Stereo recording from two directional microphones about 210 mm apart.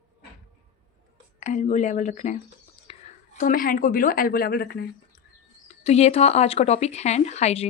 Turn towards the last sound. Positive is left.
turn(degrees=30)  # may be behind; listen again after turning